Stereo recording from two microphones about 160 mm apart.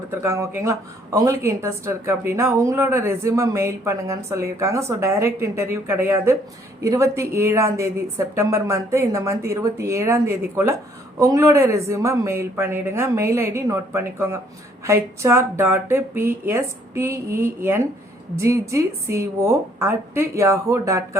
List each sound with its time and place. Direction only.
0.1 s a woman's voice: 15° right (ahead or behind)